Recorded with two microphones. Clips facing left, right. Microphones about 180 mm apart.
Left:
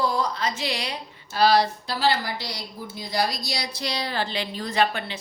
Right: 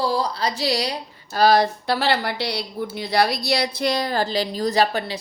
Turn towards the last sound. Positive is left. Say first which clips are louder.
# right 4 dB
turn(degrees=-35)  # may be behind; listen again after turning